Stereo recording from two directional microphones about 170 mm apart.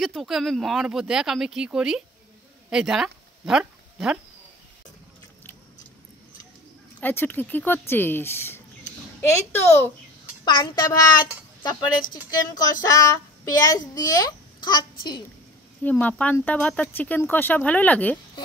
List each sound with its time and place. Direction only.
0.0 s a woman's voice: centre (ahead or behind)
7.0 s speech: 10° left (ahead or behind)
10.4 s a child's voice: 25° left (ahead or behind)
15.8 s speech: 10° left (ahead or behind)